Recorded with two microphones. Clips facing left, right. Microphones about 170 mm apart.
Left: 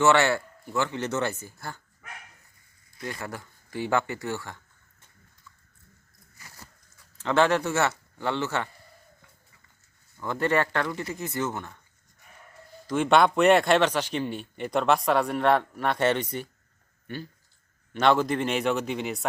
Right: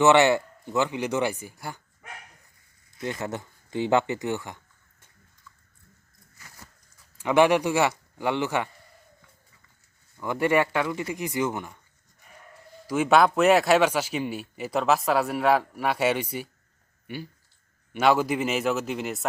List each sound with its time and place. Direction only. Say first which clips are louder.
0.0 s speech: right 3 dB; 20° right (ahead or behind)
7.2 s speech: right 3 dB; 15° right (ahead or behind)
10.2 s speech: right 2 dB; 10° right (ahead or behind)
12.9 s speech: right 1 dB; 5° right (ahead or behind)